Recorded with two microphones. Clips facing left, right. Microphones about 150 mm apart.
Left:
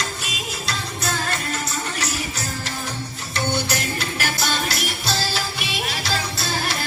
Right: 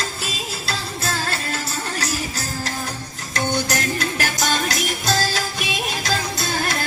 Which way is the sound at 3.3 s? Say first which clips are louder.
Right 2 dB; 45° right (ahead or behind).